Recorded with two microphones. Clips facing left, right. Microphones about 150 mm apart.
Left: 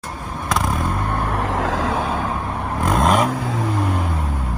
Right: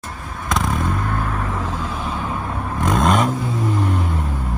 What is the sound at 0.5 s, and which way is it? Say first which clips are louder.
Vehicle: even; centre (ahead or behind).